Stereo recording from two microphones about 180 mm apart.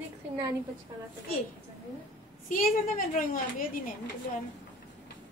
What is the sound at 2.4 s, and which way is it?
A woman's voice, 50° left (ahead or behind).